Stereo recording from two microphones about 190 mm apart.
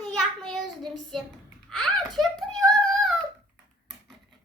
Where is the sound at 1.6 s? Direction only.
Centre (ahead or behind).